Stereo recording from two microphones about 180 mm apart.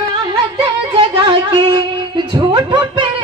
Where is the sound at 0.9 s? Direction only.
25° right (ahead or behind).